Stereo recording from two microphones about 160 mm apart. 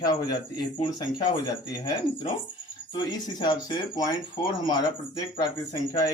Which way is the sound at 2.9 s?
25° left (ahead or behind).